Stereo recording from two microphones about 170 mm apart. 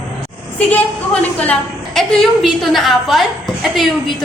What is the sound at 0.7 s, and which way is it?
A woman's voice, 10° left (ahead or behind).